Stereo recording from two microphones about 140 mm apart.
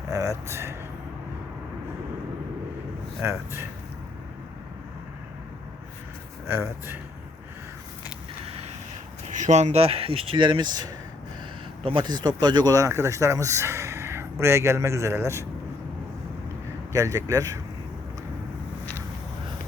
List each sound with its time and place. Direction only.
0.1 s speech: 25° right (ahead or behind)
3.2 s speech: 20° right (ahead or behind)
6.5 s speech: 15° right (ahead or behind)
8.4 s a sound: 45° right (ahead or behind)
9.3 s speech: 60° right (ahead or behind); by 10.8 s 30° right (ahead or behind)
11.9 s speech: 35° right (ahead or behind)
16.9 s speech: 25° right (ahead or behind)